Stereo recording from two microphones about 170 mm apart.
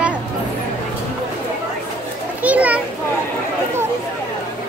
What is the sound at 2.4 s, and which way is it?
Children playing, 10° right (ahead or behind).